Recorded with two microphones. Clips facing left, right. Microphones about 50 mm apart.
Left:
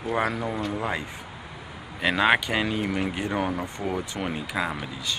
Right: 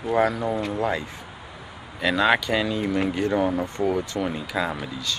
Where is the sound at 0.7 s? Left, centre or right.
Centre.